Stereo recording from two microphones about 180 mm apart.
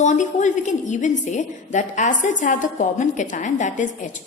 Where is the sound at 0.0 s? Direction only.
40° left (ahead or behind).